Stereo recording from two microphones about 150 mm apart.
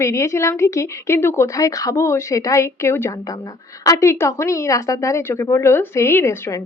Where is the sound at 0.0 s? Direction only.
20° left (ahead or behind).